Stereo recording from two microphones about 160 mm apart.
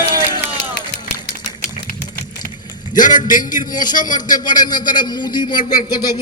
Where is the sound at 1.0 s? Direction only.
90° left.